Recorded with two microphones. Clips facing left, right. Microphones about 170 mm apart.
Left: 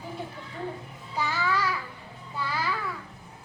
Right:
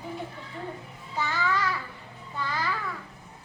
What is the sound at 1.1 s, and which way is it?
Child singing, 10° left (ahead or behind).